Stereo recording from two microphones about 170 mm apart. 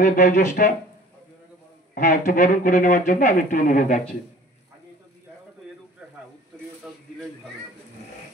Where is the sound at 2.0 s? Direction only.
50° left (ahead or behind).